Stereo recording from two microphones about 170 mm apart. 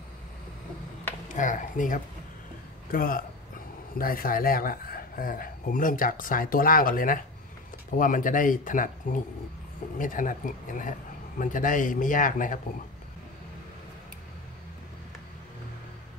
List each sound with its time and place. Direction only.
1.3 s a man's voice: 50° left (ahead or behind)